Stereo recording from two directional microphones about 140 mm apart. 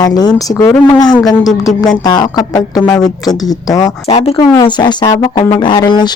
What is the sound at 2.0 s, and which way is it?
A woman's voice, 30° left (ahead or behind).